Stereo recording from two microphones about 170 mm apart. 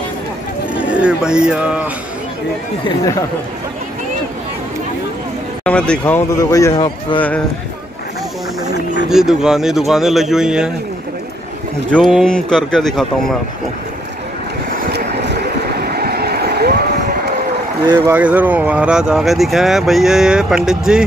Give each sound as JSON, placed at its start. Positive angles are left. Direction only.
{"t": 0.7, "sound": "speech", "side_deg": -5}
{"t": 5.6, "sound": "a man's voice", "side_deg": 5}
{"t": 9.1, "sound": "speech", "side_deg": -5}
{"t": 11.9, "sound": "speech", "side_deg": 0}
{"t": 14.9, "sound": "a sound", "side_deg": -75}
{"t": 17.8, "sound": "speech", "side_deg": -20}